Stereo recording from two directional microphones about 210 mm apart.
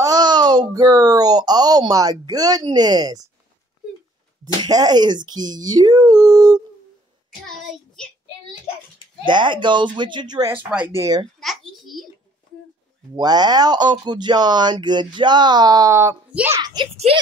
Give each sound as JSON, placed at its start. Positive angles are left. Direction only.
{"t": 0.0, "sound": "a child's voice", "side_deg": -20}
{"t": 4.6, "sound": "speech", "side_deg": -20}
{"t": 7.2, "sound": "a child's voice", "side_deg": 0}
{"t": 9.2, "sound": "speech", "side_deg": -20}
{"t": 10.6, "sound": "speech", "side_deg": -5}
{"t": 11.0, "sound": "speech", "side_deg": -20}
{"t": 11.3, "sound": "a sound", "side_deg": 0}
{"t": 13.1, "sound": "speech", "side_deg": -20}